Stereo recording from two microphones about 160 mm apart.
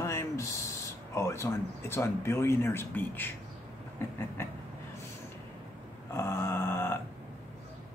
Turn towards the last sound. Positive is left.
turn(degrees=15)  # may be behind; listen again after turning